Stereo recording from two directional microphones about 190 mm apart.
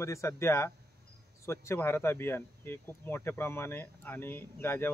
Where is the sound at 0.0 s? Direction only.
15° left (ahead or behind).